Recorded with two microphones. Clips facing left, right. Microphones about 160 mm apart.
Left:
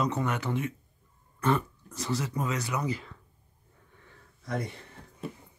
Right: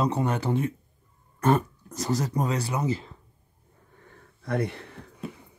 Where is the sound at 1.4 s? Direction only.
45° right (ahead or behind); by 3.2 s 30° right (ahead or behind).